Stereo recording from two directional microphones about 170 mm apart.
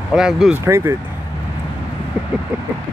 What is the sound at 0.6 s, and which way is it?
Speech, 15° right (ahead or behind).